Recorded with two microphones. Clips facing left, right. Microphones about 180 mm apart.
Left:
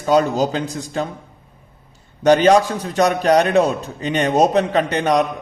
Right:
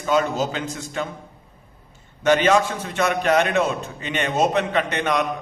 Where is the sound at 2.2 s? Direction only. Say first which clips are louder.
Left 5 dB; 35° left (ahead or behind).